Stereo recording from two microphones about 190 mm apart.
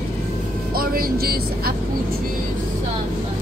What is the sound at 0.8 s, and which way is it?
Speech, 50° right (ahead or behind).